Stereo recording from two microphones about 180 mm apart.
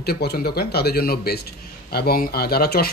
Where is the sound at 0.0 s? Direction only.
60° left (ahead or behind).